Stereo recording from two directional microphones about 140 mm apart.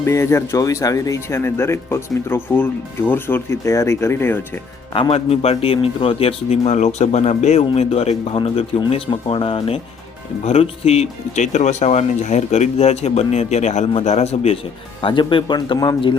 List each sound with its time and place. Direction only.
0.0 s speech: 20° left (ahead or behind)
4.9 s speech: 45° left (ahead or behind)